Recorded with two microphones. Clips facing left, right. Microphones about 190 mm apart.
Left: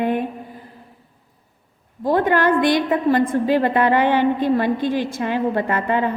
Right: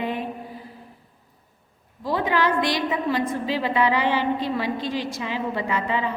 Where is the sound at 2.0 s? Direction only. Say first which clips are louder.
Left 6 dB; 55° left (ahead or behind).